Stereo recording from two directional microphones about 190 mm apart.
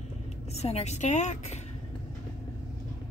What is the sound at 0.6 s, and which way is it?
A woman's voice, 35° left (ahead or behind).